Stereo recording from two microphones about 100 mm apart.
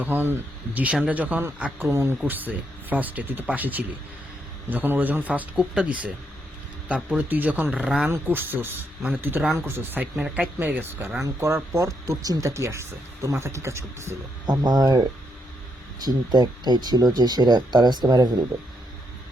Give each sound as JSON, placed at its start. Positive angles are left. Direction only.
{"t": 0.0, "sound": "speech", "side_deg": -20}
{"t": 8.1, "sound": "speech", "side_deg": -20}
{"t": 14.5, "sound": "speech", "side_deg": -40}
{"t": 16.0, "sound": "speech", "side_deg": -45}